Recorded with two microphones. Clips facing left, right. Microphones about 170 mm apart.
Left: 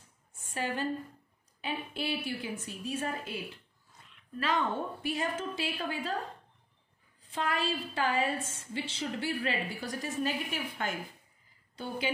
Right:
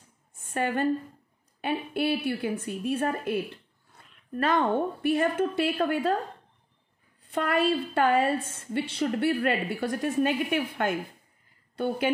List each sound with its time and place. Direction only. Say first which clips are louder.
0.4 s a woman's voice: right 7 dB; 55° right (ahead or behind)
7.2 s a woman's voice: right 8 dB; 60° right (ahead or behind)